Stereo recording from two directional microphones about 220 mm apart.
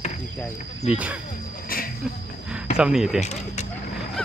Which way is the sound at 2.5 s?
5° right (ahead or behind).